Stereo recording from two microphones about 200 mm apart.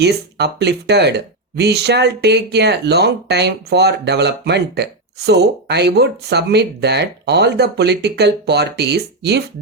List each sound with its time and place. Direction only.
0.0 s speech: 55° right (ahead or behind)